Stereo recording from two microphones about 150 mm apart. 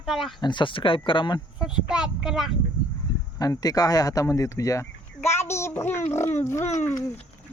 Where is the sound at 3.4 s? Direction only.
25° left (ahead or behind).